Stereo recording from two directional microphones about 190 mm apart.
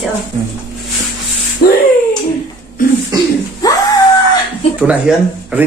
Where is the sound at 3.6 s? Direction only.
20° left (ahead or behind).